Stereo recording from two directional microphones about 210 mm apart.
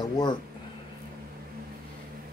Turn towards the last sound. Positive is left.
turn(degrees=20)  # may be behind; listen again after turning